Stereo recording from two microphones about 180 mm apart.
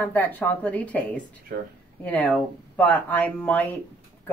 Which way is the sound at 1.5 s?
60° right (ahead or behind).